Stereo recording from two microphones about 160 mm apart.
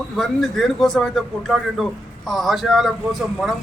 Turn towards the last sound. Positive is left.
turn(degrees=0)  # may be behind; listen again after turning